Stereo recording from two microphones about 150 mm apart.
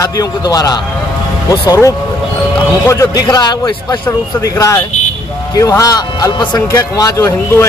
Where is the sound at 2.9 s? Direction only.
20° left (ahead or behind).